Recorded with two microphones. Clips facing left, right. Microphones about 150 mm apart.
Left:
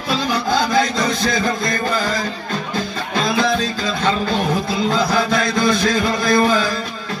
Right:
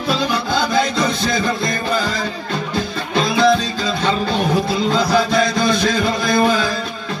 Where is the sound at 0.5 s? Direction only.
45° left (ahead or behind).